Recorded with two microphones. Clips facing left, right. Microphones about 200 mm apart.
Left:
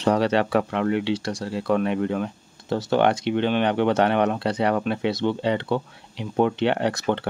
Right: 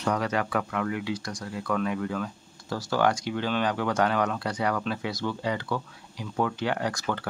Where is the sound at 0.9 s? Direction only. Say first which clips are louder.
Left 7 dB; 70° left (ahead or behind).